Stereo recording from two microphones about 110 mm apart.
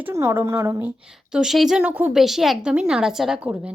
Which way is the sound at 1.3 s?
5° right (ahead or behind).